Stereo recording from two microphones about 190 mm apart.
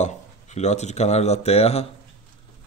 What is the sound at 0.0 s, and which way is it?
Speech, 35° left (ahead or behind).